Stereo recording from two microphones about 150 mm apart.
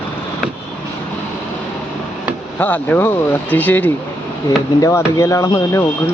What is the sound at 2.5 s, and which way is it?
Speech, 10° left (ahead or behind).